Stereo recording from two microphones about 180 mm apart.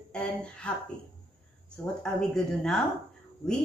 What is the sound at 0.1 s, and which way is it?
Speech, 5° left (ahead or behind).